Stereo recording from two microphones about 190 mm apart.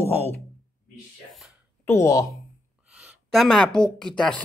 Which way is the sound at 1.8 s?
15° left (ahead or behind).